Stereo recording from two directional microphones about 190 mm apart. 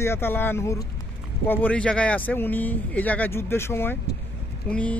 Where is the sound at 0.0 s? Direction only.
10° left (ahead or behind).